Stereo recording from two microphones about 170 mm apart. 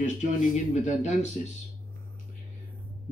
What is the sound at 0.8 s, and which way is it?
Speech, 45° left (ahead or behind).